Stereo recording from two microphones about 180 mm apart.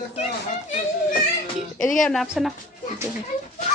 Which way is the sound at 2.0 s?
Centre (ahead or behind).